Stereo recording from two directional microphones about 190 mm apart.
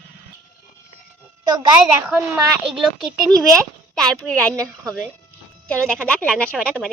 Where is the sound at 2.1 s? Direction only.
5° right (ahead or behind).